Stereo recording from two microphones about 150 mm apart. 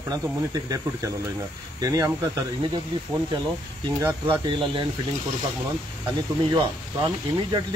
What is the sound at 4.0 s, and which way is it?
Speech, 15° right (ahead or behind).